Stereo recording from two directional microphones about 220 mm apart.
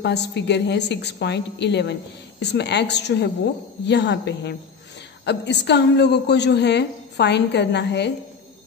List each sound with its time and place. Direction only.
0.0 s a woman's voice: 50° left (ahead or behind)